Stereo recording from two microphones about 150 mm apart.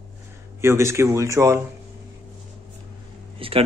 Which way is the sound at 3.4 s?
35° right (ahead or behind).